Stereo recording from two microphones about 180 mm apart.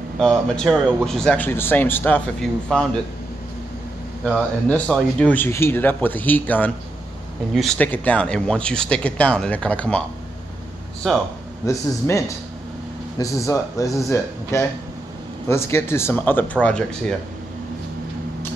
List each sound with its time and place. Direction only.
0.2 s a man's voice: 5° left (ahead or behind)
4.6 s speech: 5° left (ahead or behind)
11.0 s a man's voice: 5° left (ahead or behind)
11.6 s speech: 15° left (ahead or behind)